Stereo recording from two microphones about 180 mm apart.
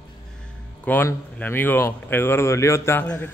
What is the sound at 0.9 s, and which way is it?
Speech, 10° left (ahead or behind).